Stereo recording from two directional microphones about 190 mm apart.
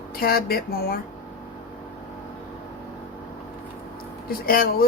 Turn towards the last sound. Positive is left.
turn(degrees=50)  # may be behind; listen again after turning